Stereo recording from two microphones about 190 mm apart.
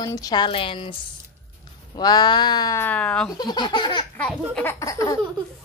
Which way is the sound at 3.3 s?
20° left (ahead or behind).